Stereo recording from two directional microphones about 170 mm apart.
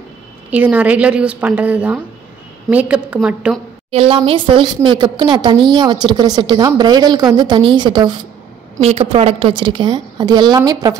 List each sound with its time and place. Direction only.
0.5 s a woman's voice: 10° right (ahead or behind)
3.9 s a woman's voice: 35° right (ahead or behind)